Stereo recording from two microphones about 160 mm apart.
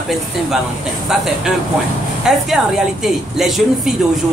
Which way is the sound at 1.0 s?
Centre (ahead or behind).